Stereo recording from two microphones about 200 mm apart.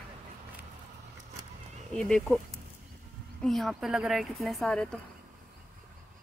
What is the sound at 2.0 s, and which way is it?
Speech, 5° left (ahead or behind).